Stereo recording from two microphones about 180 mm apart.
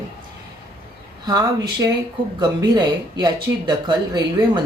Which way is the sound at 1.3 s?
20° right (ahead or behind).